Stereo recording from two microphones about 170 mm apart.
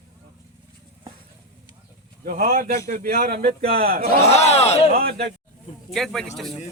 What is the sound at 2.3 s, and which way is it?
Speech, 55° right (ahead or behind).